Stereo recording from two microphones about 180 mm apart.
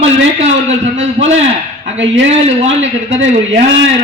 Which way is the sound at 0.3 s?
35° right (ahead or behind).